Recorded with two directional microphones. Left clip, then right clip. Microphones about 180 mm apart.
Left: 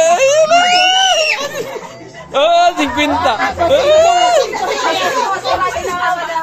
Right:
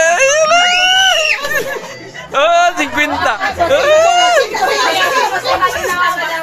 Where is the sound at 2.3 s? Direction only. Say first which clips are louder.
Even; 10° left (ahead or behind).